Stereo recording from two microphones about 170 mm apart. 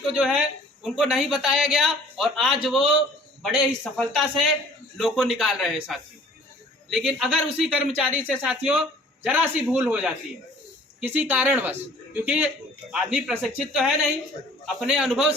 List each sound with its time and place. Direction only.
0.2 s speech: 5° right (ahead or behind)